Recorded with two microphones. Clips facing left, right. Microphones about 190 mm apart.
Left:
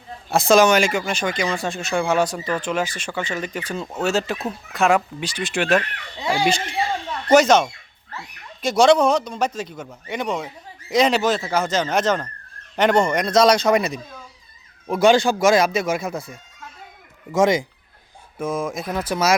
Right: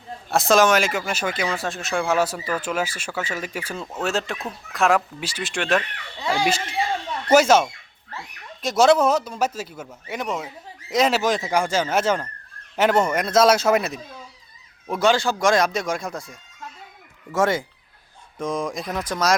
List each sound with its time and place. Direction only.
0.3 s speech: centre (ahead or behind)
7.3 s speech: 5° right (ahead or behind)
14.9 s speech: 15° left (ahead or behind)
15.4 s speech: 5° left (ahead or behind)
17.3 s speech: 15° left (ahead or behind)
18.3 s speech: 5° left (ahead or behind)